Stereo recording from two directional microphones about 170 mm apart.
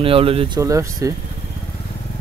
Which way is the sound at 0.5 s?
20° right (ahead or behind).